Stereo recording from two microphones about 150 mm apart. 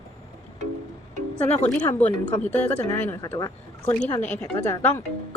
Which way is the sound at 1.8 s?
10° left (ahead or behind).